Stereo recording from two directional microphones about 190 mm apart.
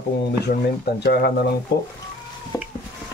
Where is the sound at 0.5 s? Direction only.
60° left (ahead or behind).